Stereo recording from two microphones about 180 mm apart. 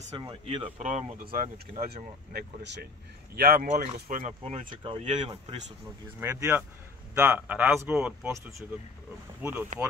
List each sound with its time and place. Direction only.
0.2 s speech: 30° right (ahead or behind)
0.7 s speech: 45° right (ahead or behind)
2.3 s speech: 70° right (ahead or behind)
3.3 s speech: 55° right (ahead or behind); by 5.1 s 40° right (ahead or behind)
5.1 s speech: 30° right (ahead or behind)
6.1 s speech: 10° right (ahead or behind)